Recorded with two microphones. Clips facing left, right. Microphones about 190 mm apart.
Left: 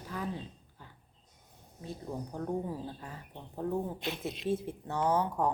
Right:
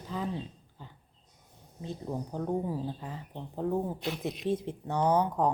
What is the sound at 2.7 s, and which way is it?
Speech, 20° right (ahead or behind).